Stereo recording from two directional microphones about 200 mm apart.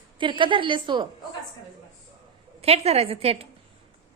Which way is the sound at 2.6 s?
30° right (ahead or behind).